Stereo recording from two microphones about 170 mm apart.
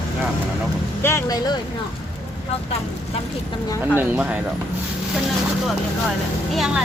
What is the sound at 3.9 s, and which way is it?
Speech, 10° right (ahead or behind).